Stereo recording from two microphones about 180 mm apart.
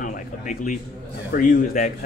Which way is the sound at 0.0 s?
45° left (ahead or behind).